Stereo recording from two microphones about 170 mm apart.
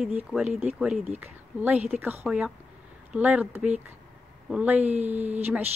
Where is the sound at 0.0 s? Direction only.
Centre (ahead or behind).